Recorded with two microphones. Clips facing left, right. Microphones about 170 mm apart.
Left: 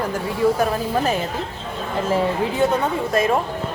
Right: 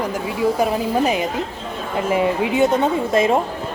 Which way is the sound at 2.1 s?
15° right (ahead or behind).